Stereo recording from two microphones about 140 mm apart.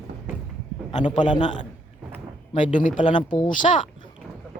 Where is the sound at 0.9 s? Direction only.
60° left (ahead or behind).